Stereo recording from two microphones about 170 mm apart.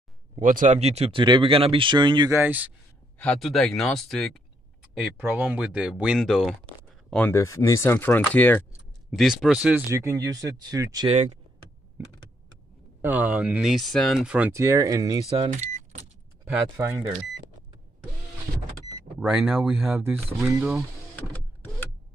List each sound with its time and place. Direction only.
0.4 s speech: 50° right (ahead or behind); by 2.7 s 10° right (ahead or behind)
3.2 s speech: 5° left (ahead or behind)
5.2 s speech: 10° right (ahead or behind); by 8.6 s 10° left (ahead or behind)
9.1 s speech: centre (ahead or behind); by 11.1 s 20° right (ahead or behind)
11.1 s speech: 40° right (ahead or behind)
13.0 s speech: 10° right (ahead or behind)
15.5 s car: 45° right (ahead or behind)
16.4 s speech: 15° right (ahead or behind)
19.1 s speech: 10° right (ahead or behind)